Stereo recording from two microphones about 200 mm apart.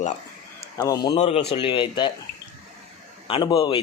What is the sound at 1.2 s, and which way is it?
Speech, 30° left (ahead or behind).